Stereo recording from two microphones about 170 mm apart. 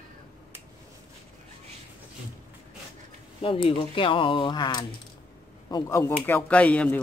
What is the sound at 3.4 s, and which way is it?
Speech, 30° left (ahead or behind).